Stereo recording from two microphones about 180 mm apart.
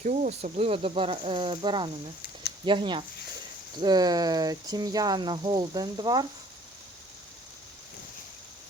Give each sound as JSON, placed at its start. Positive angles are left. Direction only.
{"t": 0.0, "sound": "speech", "side_deg": -40}